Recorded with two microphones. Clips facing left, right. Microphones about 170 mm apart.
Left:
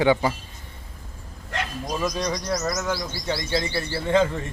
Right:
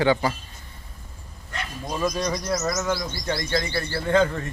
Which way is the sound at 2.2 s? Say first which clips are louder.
Even; 5° right (ahead or behind).